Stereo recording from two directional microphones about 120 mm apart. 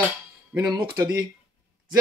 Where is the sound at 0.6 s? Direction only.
35° right (ahead or behind).